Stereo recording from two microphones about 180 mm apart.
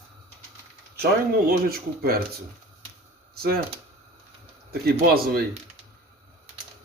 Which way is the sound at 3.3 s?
60° right (ahead or behind).